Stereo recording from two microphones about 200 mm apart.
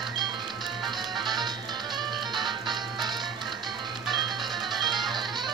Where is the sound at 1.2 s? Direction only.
20° right (ahead or behind).